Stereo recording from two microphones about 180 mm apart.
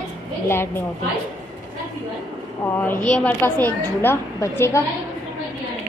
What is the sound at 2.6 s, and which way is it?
A woman's voice, 10° left (ahead or behind).